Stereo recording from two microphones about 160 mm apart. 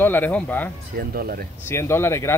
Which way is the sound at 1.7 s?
15° left (ahead or behind).